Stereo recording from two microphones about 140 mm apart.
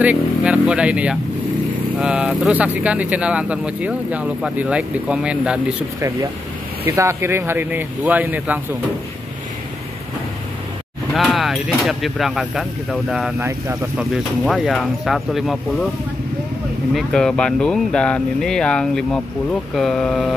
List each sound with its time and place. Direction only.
0.0 s speech: 10° right (ahead or behind)
6.8 s speech: 20° right (ahead or behind)
11.1 s speech: centre (ahead or behind)
13.4 s speech: 20° right (ahead or behind)
13.9 s speech: centre (ahead or behind)
16.9 s speech: 5° left (ahead or behind)